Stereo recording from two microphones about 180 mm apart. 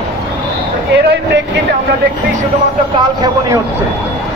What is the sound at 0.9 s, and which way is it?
Speech, 75° right (ahead or behind).